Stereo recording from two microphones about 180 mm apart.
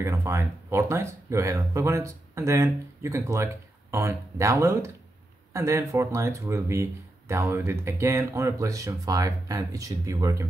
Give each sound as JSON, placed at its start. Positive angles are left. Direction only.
{"t": 0.0, "sound": "speech", "side_deg": -15}